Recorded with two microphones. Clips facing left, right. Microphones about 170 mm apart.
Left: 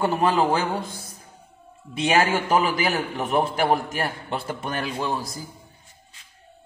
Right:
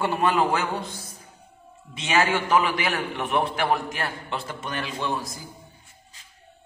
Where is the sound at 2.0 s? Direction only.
45° left (ahead or behind).